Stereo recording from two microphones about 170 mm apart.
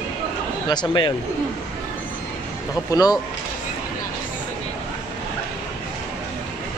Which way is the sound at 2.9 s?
20° left (ahead or behind).